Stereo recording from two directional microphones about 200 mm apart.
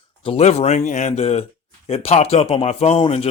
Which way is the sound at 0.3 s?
30° left (ahead or behind).